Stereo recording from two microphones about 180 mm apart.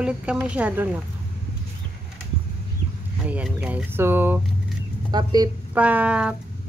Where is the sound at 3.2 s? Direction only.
5° right (ahead or behind).